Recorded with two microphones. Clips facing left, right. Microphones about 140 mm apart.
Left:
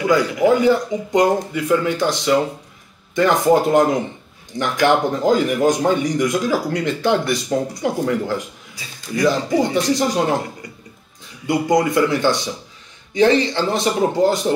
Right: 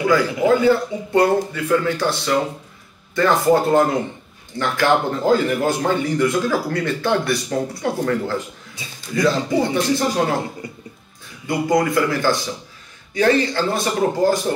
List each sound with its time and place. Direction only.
0.6 s speech: 15° left (ahead or behind)
8.8 s speech: 20° right (ahead or behind)
9.1 s speech: 15° left (ahead or behind)
11.4 s a man's voice: 20° left (ahead or behind)